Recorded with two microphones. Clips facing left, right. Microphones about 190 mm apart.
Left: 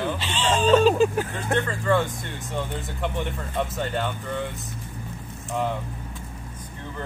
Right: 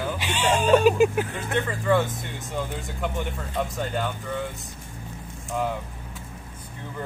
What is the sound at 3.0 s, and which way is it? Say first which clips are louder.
Speech: left 1 dB; centre (ahead or behind).